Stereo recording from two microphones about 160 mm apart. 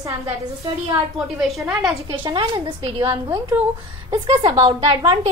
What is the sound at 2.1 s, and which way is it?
A woman's voice, 30° right (ahead or behind).